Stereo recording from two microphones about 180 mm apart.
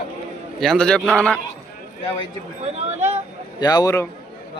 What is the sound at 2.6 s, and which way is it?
Speech, 40° right (ahead or behind).